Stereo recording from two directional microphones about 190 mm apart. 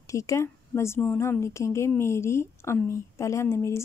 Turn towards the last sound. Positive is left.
turn(degrees=15)  # may be behind; listen again after turning